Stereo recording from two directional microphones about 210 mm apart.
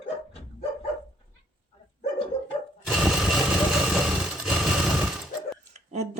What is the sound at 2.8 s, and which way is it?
Sewing machine, centre (ahead or behind).